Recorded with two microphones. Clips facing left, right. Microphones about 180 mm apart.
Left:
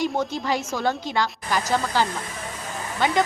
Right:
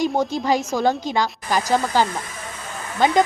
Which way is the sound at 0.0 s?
40° right (ahead or behind).